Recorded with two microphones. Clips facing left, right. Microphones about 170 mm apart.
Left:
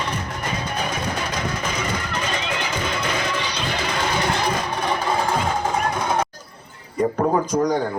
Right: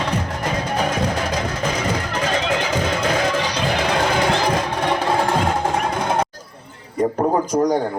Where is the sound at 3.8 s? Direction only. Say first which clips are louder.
Right 5 dB; 65° right (ahead or behind).